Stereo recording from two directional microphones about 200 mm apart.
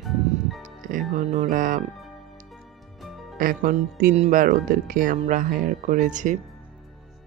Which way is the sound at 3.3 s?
45° right (ahead or behind).